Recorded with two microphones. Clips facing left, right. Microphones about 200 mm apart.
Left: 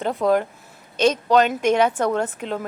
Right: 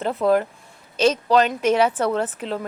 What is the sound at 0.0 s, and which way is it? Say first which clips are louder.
Speech: even; centre (ahead or behind).